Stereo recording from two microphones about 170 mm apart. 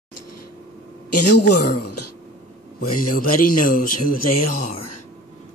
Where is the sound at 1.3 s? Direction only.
70° left (ahead or behind).